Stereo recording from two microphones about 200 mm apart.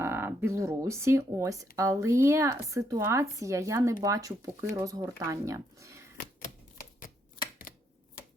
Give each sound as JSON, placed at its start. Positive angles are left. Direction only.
{"t": 0.0, "sound": "speech", "side_deg": -10}